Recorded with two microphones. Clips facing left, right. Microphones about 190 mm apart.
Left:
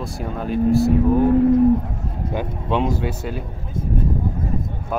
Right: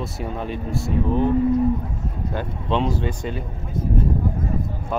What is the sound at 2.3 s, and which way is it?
Speech, 15° left (ahead or behind).